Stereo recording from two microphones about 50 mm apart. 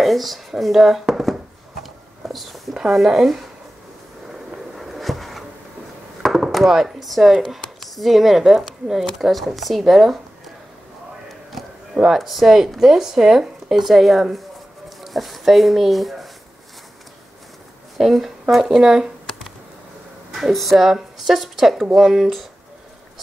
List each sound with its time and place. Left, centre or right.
0.0 s speech: centre
1.8 s a sound: centre
2.7 s speech: centre
4.7 s a sound: centre
6.2 s speech: centre
11.9 s speech: centre
12.2 s speech: centre
17.9 s speech: centre
20.3 s speech: centre